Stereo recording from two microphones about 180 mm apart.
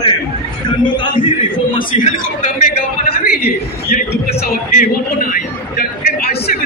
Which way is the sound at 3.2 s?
60° left (ahead or behind).